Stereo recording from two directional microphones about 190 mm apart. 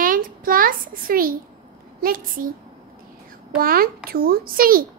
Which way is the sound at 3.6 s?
50° right (ahead or behind).